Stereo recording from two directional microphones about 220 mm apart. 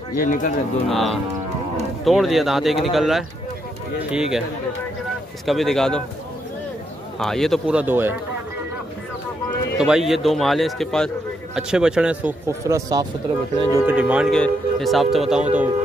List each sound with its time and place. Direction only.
0.2 s speech: 35° left (ahead or behind)
0.8 s speech: centre (ahead or behind)
5.4 s speech: centre (ahead or behind)
7.2 s speech: centre (ahead or behind)
9.5 s a man's voice: centre (ahead or behind)